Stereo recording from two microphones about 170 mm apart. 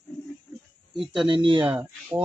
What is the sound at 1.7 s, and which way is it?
Speech, 10° right (ahead or behind).